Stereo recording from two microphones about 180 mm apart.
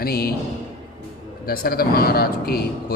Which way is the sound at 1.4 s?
55° left (ahead or behind).